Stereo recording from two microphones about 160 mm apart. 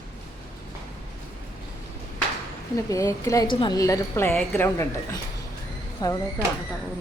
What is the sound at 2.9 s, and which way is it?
A woman's voice, 20° left (ahead or behind).